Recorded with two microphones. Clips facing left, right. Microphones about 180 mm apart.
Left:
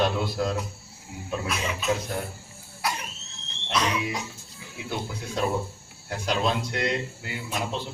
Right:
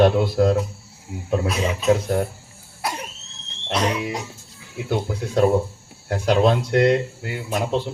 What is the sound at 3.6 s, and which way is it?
Speech, 50° right (ahead or behind).